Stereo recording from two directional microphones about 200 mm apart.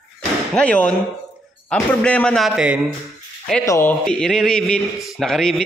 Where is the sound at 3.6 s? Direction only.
15° left (ahead or behind).